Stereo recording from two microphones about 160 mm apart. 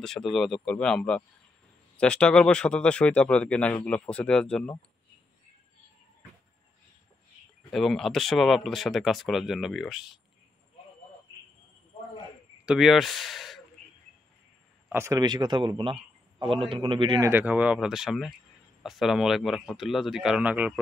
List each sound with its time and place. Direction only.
0.0 s speech: 5° left (ahead or behind)
7.7 s speech: centre (ahead or behind)
12.6 s speech: centre (ahead or behind)
14.9 s a man's voice: 20° right (ahead or behind)
17.2 s speech: 15° right (ahead or behind)